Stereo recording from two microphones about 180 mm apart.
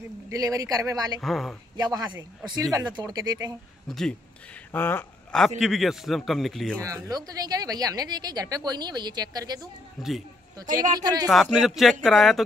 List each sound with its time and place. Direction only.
0.3 s a woman's voice: 20° right (ahead or behind)
1.2 s a man's voice: centre (ahead or behind)
1.8 s a woman's voice: 20° right (ahead or behind)
4.7 s speech: 10° left (ahead or behind)
5.6 s a man's voice: centre (ahead or behind)
6.8 s a woman's voice: 20° right (ahead or behind)
10.0 s a man's voice: centre (ahead or behind)
10.6 s a woman's voice: 20° right (ahead or behind)
11.6 s a man's voice: centre (ahead or behind)